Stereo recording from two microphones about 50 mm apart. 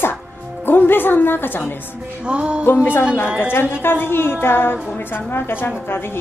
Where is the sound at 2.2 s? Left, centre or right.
Right.